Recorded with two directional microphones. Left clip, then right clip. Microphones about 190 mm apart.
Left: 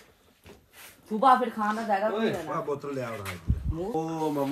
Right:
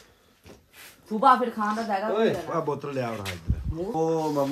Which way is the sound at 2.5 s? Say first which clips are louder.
Right 3 dB; 30° right (ahead or behind).